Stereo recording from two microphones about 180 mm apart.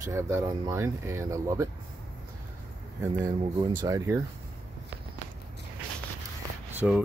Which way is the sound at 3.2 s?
25° right (ahead or behind).